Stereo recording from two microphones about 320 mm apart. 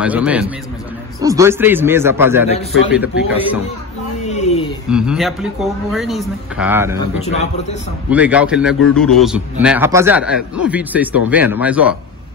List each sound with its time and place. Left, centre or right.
0.0 s a man's voice: centre
4.3 s a sound: centre
4.8 s a man's voice: centre
7.2 s a man's voice: centre
8.1 s a man's voice: centre